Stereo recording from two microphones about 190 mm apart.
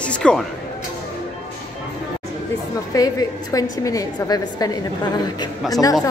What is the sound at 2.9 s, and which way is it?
A woman's voice, 20° left (ahead or behind).